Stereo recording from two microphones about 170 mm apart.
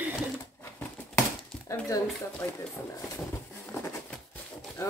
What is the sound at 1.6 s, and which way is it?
Speech, 20° left (ahead or behind).